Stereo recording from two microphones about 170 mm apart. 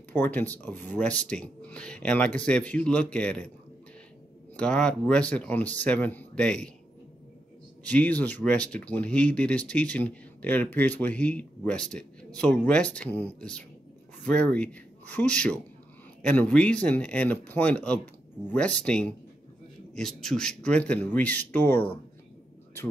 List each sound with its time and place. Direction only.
0.1 s speech: 10° left (ahead or behind)
4.6 s speech: 5° left (ahead or behind)
7.8 s speech: 10° left (ahead or behind)